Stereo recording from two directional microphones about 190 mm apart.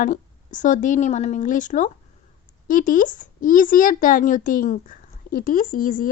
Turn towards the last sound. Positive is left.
turn(degrees=45)  # may be behind; listen again after turning